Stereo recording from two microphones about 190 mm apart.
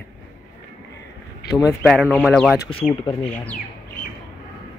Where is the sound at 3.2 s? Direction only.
5° left (ahead or behind).